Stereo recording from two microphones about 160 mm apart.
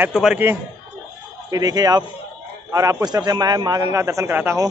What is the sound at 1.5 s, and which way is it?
A man's voice, 25° right (ahead or behind).